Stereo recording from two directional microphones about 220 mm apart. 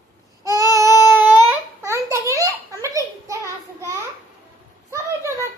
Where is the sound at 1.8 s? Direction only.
15° right (ahead or behind).